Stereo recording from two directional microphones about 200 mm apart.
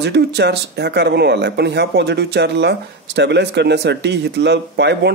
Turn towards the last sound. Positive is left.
turn(degrees=-60)  # may be behind; listen again after turning